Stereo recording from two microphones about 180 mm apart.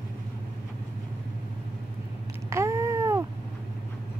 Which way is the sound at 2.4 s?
15° right (ahead or behind).